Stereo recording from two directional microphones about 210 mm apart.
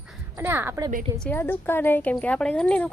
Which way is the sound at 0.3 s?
10° right (ahead or behind).